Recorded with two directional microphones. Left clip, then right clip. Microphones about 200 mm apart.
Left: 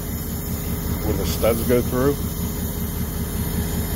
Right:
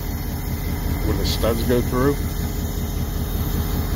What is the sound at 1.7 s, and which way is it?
Speech, centre (ahead or behind).